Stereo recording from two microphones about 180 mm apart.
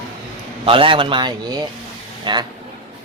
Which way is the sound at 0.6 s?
30° right (ahead or behind).